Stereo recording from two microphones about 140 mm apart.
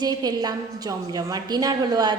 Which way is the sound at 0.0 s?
30° right (ahead or behind).